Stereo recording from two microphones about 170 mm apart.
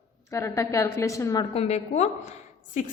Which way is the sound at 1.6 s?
40° left (ahead or behind).